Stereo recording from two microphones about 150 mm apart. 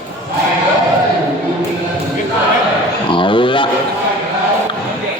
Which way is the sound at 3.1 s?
35° left (ahead or behind).